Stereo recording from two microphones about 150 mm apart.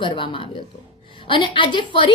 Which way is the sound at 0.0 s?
35° left (ahead or behind).